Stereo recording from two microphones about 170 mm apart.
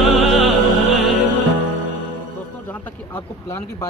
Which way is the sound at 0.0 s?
Centre (ahead or behind).